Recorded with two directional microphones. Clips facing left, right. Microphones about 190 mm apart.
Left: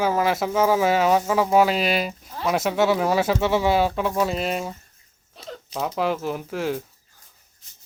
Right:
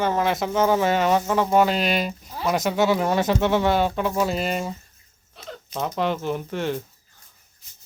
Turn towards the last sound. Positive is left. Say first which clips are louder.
# even
turn(degrees=5)  # may be behind; listen again after turning